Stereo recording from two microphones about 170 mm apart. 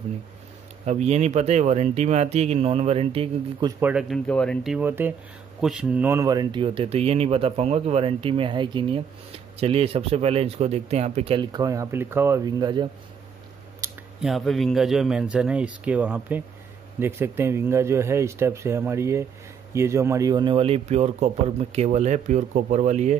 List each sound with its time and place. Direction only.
0.8 s speech: 40° right (ahead or behind)
3.8 s speech: 5° right (ahead or behind)
4.3 s speech: 5° left (ahead or behind)
4.7 s speech: 10° right (ahead or behind); by 11.4 s 35° right (ahead or behind)
11.5 s speech: 20° right (ahead or behind)
14.2 s speech: centre (ahead or behind); by 23.1 s 45° right (ahead or behind)